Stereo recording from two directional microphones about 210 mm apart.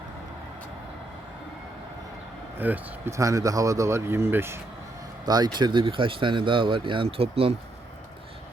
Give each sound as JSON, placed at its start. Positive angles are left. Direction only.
{"t": 2.6, "sound": "speech", "side_deg": -10}